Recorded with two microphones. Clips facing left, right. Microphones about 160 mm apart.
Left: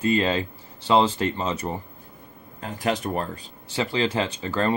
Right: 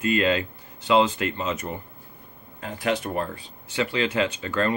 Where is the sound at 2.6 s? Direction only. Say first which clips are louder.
Even; 40° left (ahead or behind).